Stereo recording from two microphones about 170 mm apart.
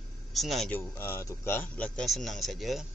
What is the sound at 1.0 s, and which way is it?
Speech, 15° left (ahead or behind).